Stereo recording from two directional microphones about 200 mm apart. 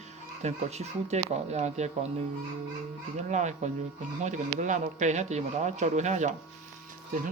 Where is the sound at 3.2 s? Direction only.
35° right (ahead or behind).